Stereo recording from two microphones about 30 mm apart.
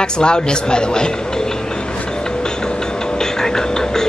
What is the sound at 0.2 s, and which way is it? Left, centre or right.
Speech, left.